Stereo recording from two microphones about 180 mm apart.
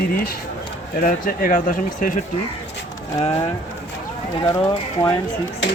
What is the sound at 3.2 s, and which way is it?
Speech, 35° left (ahead or behind).